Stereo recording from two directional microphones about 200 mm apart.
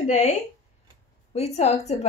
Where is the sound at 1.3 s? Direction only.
30° left (ahead or behind).